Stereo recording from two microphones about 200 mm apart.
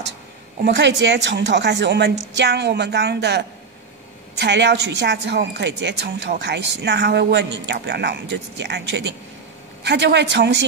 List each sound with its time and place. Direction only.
0.6 s a woman's voice: 60° right (ahead or behind)